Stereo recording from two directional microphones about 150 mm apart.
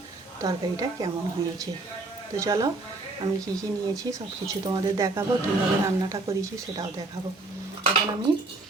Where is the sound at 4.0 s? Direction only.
25° right (ahead or behind).